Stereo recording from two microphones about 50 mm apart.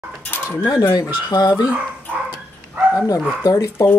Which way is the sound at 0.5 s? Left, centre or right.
Left.